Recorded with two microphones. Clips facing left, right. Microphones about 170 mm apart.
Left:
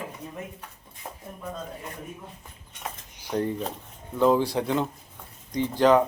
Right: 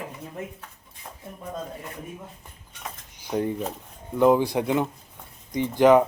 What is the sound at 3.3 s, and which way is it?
A man's voice, 10° right (ahead or behind).